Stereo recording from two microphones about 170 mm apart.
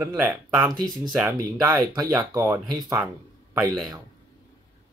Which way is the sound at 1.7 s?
20° right (ahead or behind).